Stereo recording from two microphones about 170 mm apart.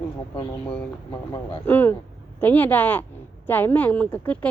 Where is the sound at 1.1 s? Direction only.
30° left (ahead or behind).